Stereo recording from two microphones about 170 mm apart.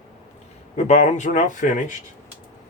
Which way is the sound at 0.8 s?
45° left (ahead or behind).